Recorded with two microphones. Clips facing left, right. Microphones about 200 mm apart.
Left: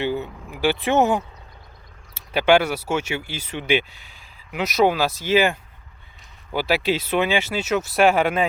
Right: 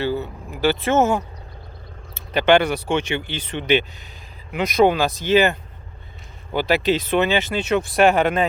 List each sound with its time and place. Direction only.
0.0 s speech: 15° left (ahead or behind)